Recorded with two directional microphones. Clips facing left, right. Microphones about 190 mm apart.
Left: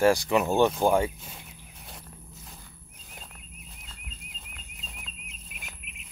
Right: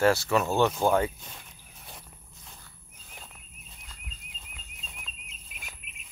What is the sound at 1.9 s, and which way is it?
Walk, centre (ahead or behind).